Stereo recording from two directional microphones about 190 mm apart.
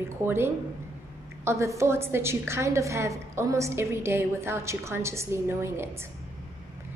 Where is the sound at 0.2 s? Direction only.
10° right (ahead or behind).